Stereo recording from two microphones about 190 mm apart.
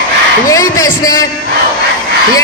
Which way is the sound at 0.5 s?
15° left (ahead or behind).